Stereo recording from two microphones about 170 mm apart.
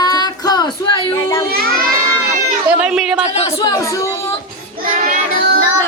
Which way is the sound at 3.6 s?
20° left (ahead or behind).